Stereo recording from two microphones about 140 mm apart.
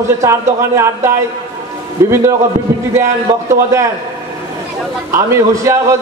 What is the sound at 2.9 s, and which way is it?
Speech, 20° right (ahead or behind).